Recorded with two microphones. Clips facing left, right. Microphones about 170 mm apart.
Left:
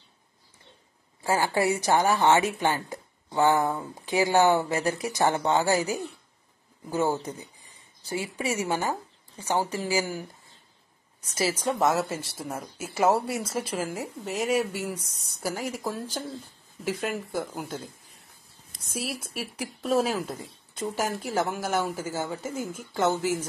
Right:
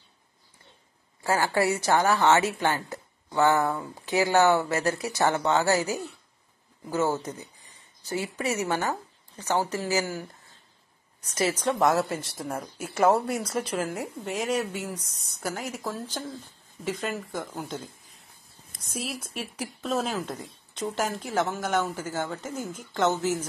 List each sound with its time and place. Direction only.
1.2 s a woman's voice: 15° left (ahead or behind)
11.3 s a woman's voice: 10° left (ahead or behind)
18.9 s a woman's voice: 10° left (ahead or behind)